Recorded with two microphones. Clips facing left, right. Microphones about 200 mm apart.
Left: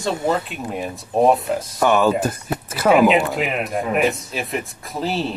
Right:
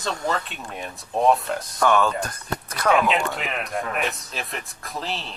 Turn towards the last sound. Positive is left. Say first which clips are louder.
# left 8 dB
turn(degrees=0)  # may be behind; listen again after turning